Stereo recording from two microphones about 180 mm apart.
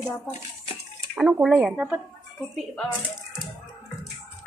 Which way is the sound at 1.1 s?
5° right (ahead or behind).